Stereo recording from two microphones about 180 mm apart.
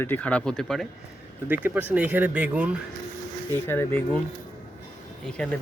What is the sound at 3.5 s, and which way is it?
Speech, 15° left (ahead or behind).